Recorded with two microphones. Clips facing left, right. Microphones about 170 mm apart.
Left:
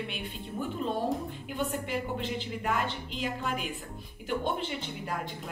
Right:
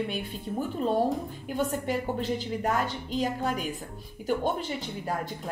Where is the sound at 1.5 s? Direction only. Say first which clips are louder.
Right 4 dB; 40° right (ahead or behind).